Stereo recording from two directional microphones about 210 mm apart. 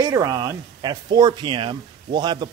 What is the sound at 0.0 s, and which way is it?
Speech, 15° right (ahead or behind).